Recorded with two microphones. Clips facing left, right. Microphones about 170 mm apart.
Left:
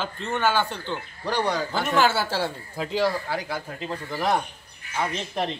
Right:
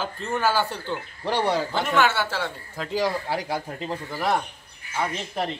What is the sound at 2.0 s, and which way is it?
Speech, 35° left (ahead or behind).